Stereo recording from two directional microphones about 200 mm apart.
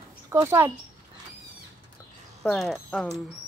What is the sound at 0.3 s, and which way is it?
Speech, 15° right (ahead or behind).